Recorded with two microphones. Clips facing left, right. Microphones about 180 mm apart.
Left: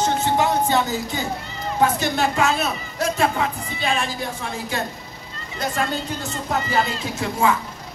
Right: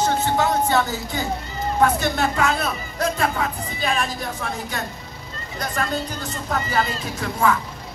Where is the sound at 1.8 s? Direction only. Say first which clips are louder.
Even; 25° left (ahead or behind).